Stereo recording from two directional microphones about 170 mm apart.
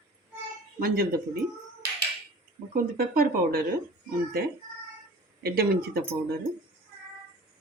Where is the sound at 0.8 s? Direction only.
60° right (ahead or behind).